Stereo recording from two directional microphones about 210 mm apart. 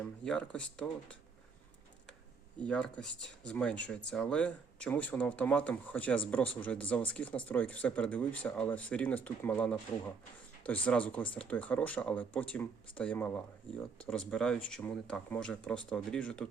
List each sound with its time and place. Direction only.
0.0 s speech: 5° left (ahead or behind)
2.6 s speech: 5° left (ahead or behind)
10.8 s speech: 5° left (ahead or behind)